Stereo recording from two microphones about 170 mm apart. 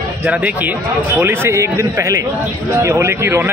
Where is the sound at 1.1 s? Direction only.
15° right (ahead or behind).